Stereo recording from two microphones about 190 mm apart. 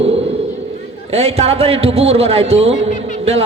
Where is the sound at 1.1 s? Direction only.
35° right (ahead or behind).